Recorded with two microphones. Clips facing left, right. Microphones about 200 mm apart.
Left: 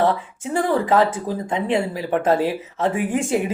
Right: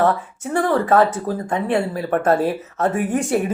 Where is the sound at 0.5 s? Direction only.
15° left (ahead or behind).